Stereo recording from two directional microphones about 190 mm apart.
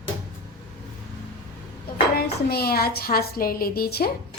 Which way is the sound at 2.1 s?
55° left (ahead or behind).